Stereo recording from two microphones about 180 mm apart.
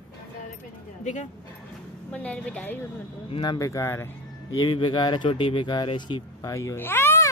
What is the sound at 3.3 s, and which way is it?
Speech, 25° left (ahead or behind).